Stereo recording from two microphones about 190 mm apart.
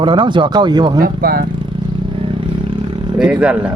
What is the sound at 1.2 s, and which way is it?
Speech, 55° right (ahead or behind).